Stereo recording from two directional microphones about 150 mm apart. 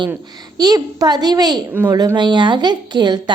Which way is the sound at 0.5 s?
25° right (ahead or behind).